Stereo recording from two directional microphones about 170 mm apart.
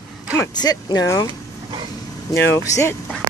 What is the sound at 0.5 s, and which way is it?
Speech, 25° left (ahead or behind).